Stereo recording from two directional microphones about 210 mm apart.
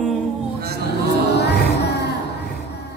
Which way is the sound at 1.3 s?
50° left (ahead or behind).